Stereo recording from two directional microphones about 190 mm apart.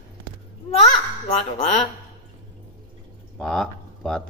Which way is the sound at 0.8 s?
30° left (ahead or behind).